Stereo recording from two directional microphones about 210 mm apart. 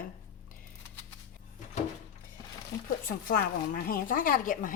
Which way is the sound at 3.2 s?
45° left (ahead or behind).